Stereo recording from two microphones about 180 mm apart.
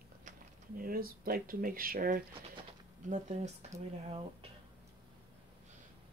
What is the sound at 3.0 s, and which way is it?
Speech, 40° right (ahead or behind).